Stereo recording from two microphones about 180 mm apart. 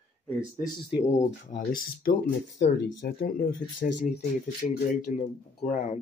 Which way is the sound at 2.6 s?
70° left (ahead or behind).